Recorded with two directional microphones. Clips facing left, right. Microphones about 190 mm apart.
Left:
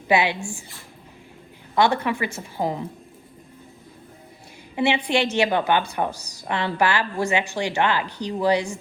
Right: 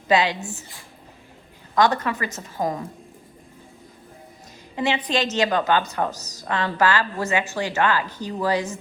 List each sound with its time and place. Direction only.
0.1 s a woman's voice: 15° left (ahead or behind)
1.7 s a woman's voice: 10° left (ahead or behind)
4.7 s a woman's voice: 15° left (ahead or behind)